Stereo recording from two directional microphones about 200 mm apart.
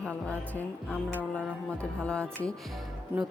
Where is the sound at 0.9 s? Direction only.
10° right (ahead or behind).